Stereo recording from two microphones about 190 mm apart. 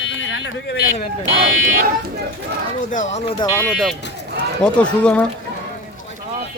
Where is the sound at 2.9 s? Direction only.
40° left (ahead or behind).